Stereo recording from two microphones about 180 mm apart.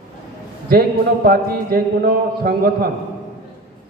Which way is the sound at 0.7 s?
55° right (ahead or behind).